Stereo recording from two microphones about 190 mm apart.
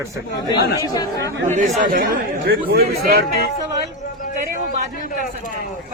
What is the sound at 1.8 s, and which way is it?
Speech, 45° right (ahead or behind).